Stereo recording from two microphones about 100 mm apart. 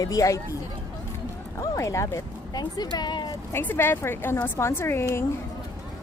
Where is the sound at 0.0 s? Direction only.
35° left (ahead or behind).